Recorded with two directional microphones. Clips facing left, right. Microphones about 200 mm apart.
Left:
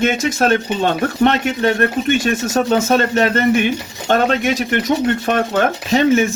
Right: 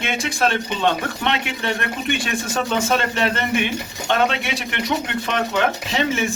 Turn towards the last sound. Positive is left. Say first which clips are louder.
# left 8 dB
turn(degrees=45)  # may be behind; listen again after turning